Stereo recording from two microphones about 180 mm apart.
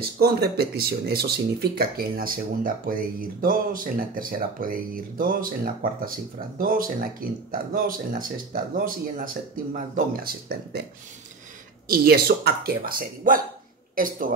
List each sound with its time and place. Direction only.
0.0 s speech: 60° right (ahead or behind)
11.9 s speech: 55° right (ahead or behind)